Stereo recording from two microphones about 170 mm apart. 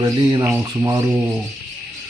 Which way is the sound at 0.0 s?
20° right (ahead or behind).